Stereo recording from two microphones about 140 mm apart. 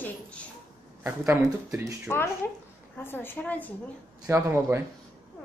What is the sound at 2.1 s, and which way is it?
A woman's voice, 15° left (ahead or behind).